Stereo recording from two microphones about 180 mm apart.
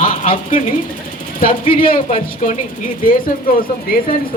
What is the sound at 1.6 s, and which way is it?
Speech, 30° left (ahead or behind).